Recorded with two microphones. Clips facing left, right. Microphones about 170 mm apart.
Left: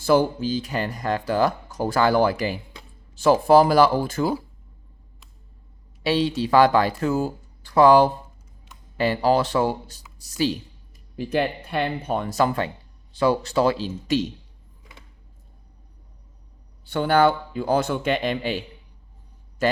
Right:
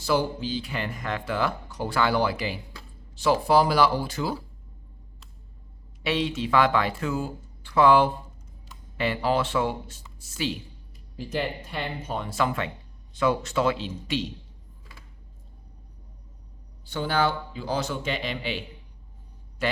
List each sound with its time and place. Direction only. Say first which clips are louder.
0.0 s speech: left 6 dB; 50° left (ahead or behind)
6.0 s a woman's voice: left 5 dB; 35° left (ahead or behind)
11.2 s speech: left 6 dB; 60° left (ahead or behind); by 14.3 s 40° left (ahead or behind)
16.8 s speech: left 7 dB; 60° left (ahead or behind)
19.6 s a man's voice: left 6 dB; 45° left (ahead or behind)